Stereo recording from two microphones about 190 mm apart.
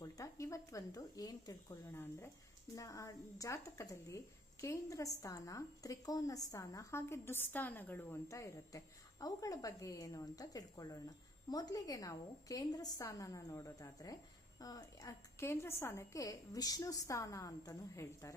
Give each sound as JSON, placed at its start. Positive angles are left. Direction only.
{"t": 0.0, "sound": "a woman's voice", "side_deg": 15}